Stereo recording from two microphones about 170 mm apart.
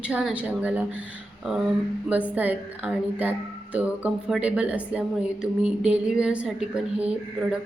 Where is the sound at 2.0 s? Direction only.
10° right (ahead or behind).